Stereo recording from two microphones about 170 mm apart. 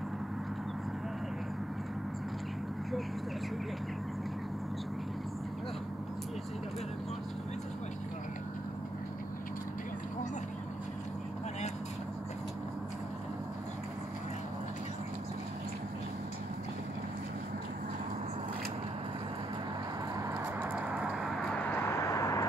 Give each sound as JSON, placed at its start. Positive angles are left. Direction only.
{"t": 20.5, "sound": "vehicle", "side_deg": -10}
{"t": 21.5, "sound": "vehicle", "side_deg": 15}